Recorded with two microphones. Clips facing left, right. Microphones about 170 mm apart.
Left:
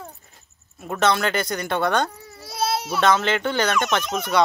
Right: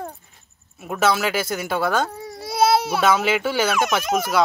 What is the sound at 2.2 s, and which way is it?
Baby cry, 70° right (ahead or behind).